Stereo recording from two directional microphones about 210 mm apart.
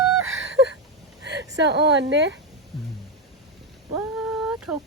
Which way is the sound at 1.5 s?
55° right (ahead or behind).